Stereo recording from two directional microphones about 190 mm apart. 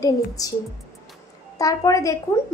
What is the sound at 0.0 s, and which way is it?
Speech, 20° left (ahead or behind).